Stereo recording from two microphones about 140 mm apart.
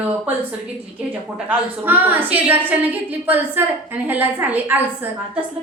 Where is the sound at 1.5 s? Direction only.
15° right (ahead or behind).